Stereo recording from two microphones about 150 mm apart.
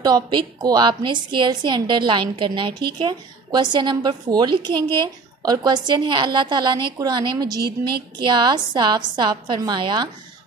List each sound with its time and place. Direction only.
0.0 s a woman's voice: 30° right (ahead or behind)